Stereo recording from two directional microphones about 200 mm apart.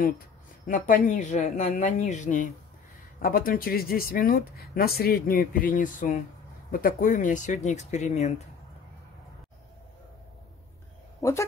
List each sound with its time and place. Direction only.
0.7 s speech: 40° left (ahead or behind)
11.1 s speech: 15° left (ahead or behind)